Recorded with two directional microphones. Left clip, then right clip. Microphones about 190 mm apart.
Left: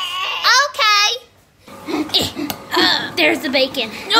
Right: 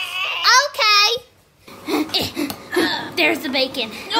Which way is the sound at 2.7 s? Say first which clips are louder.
Left 5 dB; 45° left (ahead or behind).